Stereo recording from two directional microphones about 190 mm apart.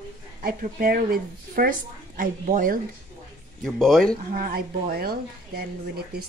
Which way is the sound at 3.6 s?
Centre (ahead or behind).